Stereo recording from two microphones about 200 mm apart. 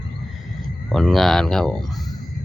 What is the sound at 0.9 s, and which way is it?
Speech, centre (ahead or behind).